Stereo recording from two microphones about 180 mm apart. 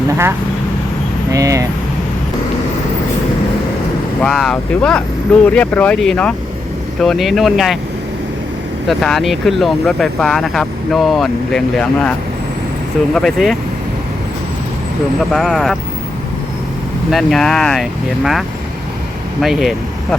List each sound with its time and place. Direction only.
0.1 s speech: 15° right (ahead or behind)
4.2 s speech: 5° left (ahead or behind)
8.9 s speech: centre (ahead or behind)
13.1 s speech: 5° left (ahead or behind)
15.2 s speech: centre (ahead or behind)
17.1 s speech: centre (ahead or behind)